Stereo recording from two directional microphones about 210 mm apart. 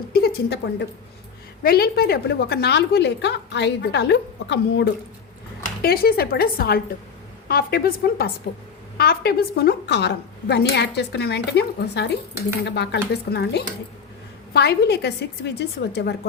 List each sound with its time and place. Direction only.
0.1 s a sound: 45° left (ahead or behind)
1.6 s a woman's voice: 45° left (ahead or behind)
5.8 s a woman's voice: 45° left (ahead or behind)